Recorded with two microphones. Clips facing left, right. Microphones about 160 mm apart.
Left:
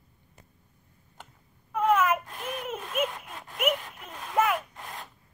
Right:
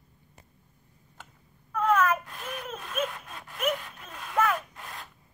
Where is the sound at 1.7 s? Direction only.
10° left (ahead or behind).